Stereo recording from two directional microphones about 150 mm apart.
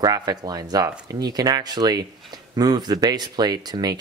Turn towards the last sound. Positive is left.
turn(degrees=-25)  # may be behind; listen again after turning